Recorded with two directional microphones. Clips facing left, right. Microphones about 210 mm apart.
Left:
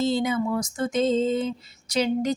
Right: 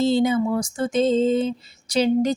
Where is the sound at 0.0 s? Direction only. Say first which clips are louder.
Right 5 dB; 30° right (ahead or behind).